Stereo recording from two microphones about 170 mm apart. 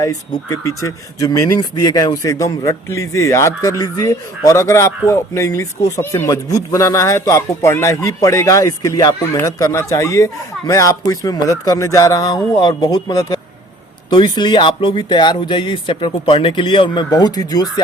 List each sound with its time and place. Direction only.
0.0 s speech: 20° left (ahead or behind)